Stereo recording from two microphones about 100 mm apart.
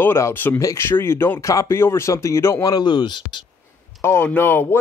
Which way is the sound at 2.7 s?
50° left (ahead or behind).